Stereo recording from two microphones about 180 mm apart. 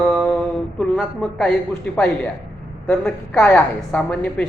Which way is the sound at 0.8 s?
5° left (ahead or behind).